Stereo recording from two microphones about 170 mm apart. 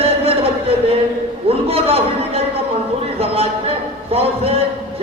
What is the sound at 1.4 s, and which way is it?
Speech, 35° right (ahead or behind).